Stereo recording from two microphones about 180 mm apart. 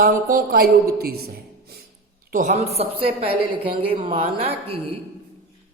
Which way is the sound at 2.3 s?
40° right (ahead or behind).